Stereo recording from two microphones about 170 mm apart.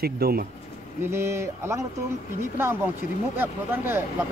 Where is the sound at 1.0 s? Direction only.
15° right (ahead or behind).